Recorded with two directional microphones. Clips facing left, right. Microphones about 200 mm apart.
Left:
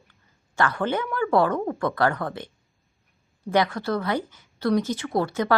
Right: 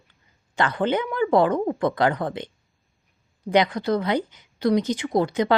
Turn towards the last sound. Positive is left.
turn(degrees=-15)  # may be behind; listen again after turning